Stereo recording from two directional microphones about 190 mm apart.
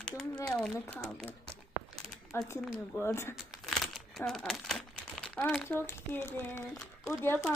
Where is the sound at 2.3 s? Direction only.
15° left (ahead or behind).